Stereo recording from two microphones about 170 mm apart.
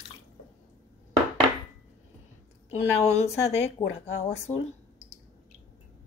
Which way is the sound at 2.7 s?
40° left (ahead or behind).